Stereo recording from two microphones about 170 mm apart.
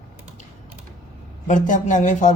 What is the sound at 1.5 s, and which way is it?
Speech, 50° left (ahead or behind).